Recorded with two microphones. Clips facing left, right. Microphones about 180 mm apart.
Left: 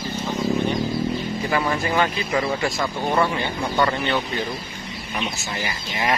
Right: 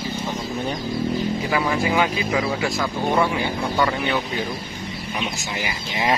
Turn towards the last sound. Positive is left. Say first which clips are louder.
# right 1 dB
turn(degrees=-20)  # may be behind; listen again after turning